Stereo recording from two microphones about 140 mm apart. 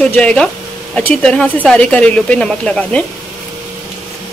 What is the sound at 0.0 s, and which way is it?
Speech, 5° left (ahead or behind).